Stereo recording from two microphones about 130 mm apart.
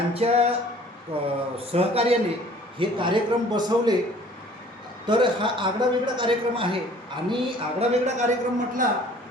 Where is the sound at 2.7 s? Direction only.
40° right (ahead or behind).